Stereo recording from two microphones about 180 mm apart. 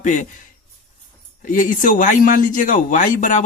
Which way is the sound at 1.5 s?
45° left (ahead or behind).